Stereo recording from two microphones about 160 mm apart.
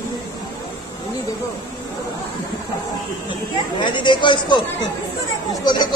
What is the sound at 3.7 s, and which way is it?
Speech, 30° left (ahead or behind).